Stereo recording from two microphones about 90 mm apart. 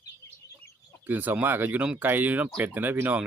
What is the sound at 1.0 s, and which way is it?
Speech, 20° right (ahead or behind).